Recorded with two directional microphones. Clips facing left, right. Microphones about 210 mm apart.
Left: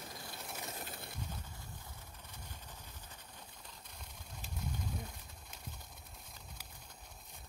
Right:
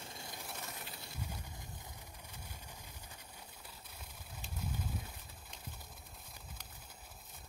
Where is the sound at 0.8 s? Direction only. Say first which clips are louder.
Left 3 dB; 50° left (ahead or behind).